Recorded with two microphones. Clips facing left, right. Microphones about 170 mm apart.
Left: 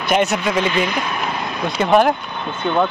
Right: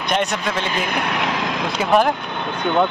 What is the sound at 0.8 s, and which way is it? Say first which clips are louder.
Vehicle: even; 65° right (ahead or behind).